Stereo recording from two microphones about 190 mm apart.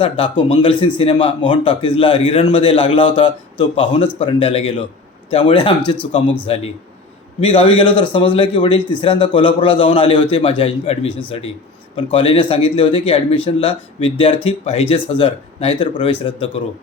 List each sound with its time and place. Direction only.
0.0 s speech: 30° left (ahead or behind)